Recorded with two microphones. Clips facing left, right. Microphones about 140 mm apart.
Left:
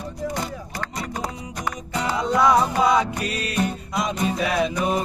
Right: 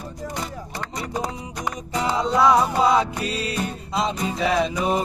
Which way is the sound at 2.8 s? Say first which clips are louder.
Even; 30° right (ahead or behind).